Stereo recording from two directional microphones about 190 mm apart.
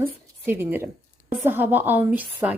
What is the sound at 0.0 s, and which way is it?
A woman's voice, 10° right (ahead or behind).